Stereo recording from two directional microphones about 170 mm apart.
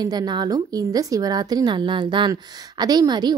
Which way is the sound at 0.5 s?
20° right (ahead or behind).